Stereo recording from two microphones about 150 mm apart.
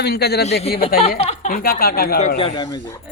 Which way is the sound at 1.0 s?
40° left (ahead or behind).